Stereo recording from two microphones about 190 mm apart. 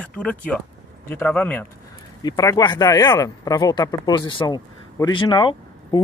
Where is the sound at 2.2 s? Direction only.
20° left (ahead or behind).